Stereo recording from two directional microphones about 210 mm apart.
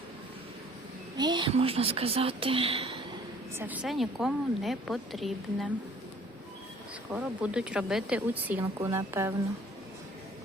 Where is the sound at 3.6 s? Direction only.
5° right (ahead or behind).